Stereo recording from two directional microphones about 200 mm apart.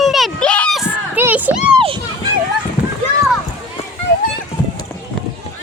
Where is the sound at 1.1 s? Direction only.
10° right (ahead or behind).